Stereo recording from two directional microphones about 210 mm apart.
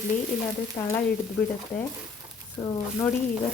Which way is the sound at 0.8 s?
15° left (ahead or behind).